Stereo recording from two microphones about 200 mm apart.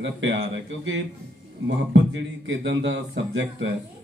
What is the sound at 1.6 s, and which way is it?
A man's voice, 65° right (ahead or behind).